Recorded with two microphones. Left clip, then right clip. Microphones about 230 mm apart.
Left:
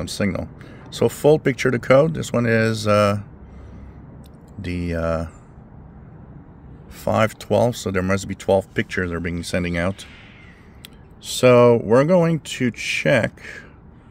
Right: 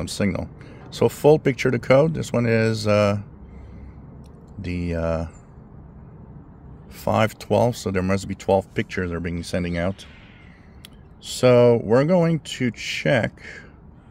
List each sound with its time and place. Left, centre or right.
0.0 s speech: centre
4.6 s speech: centre
7.0 s speech: centre
11.2 s speech: centre